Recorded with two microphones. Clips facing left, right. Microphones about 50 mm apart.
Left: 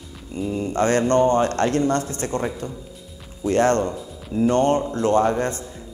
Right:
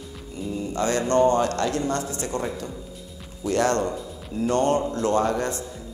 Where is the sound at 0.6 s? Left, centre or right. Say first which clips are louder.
Left 5 dB; left.